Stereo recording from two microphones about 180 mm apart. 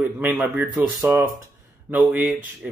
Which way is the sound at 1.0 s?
10° right (ahead or behind).